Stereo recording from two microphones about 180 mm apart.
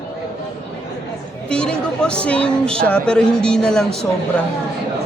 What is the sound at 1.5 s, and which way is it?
Speech, 5° left (ahead or behind).